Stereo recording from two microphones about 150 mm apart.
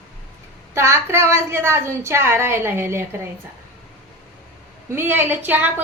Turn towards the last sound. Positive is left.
turn(degrees=-10)  # may be behind; listen again after turning